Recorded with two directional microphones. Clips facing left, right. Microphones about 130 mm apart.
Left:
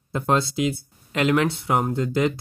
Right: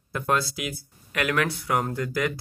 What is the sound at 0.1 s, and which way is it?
Speech, 25° left (ahead or behind).